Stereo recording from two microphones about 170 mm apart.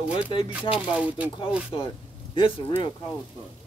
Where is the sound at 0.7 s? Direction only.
5° right (ahead or behind).